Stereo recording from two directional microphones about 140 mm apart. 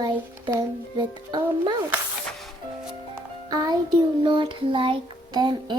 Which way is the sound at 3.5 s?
30° right (ahead or behind).